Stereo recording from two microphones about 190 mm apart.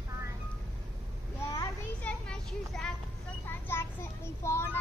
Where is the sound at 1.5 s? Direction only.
15° left (ahead or behind).